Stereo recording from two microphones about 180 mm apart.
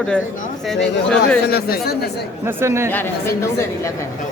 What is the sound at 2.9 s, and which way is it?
Speech, 10° left (ahead or behind).